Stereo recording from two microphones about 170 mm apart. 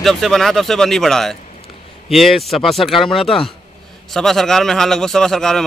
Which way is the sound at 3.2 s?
30° left (ahead or behind).